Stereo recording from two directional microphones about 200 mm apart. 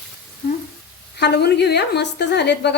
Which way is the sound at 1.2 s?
55° left (ahead or behind).